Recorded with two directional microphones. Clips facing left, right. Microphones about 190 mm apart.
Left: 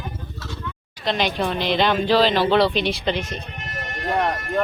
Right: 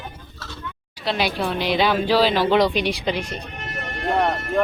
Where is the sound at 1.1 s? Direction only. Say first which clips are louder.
Left 1 dB; 5° right (ahead or behind).